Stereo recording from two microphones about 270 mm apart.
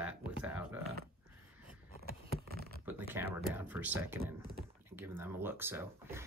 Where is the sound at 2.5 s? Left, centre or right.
Right.